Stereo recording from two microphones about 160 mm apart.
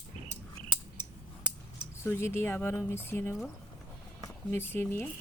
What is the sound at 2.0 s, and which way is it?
Speech, 15° left (ahead or behind).